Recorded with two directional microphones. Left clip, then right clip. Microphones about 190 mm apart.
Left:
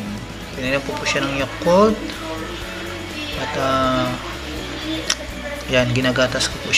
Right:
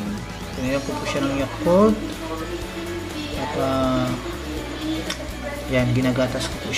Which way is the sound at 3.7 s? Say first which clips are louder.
Left 5 dB; centre (ahead or behind).